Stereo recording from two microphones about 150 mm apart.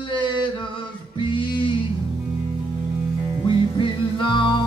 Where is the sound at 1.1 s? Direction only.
35° left (ahead or behind).